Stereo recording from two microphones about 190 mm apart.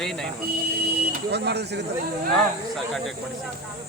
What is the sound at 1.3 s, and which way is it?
Speech, 60° right (ahead or behind).